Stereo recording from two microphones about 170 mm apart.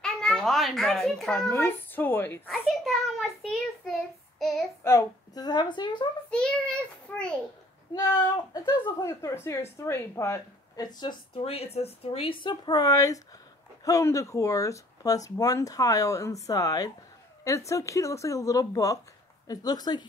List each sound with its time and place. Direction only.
0.0 s a child's voice: 5° left (ahead or behind)
1.5 s speech: 10° left (ahead or behind)
2.4 s a sound: centre (ahead or behind)
4.4 s child singing: centre (ahead or behind)
4.8 s a woman's voice: 20° left (ahead or behind)
6.3 s a sound: 5° left (ahead or behind)
7.9 s a woman's voice: 25° left (ahead or behind)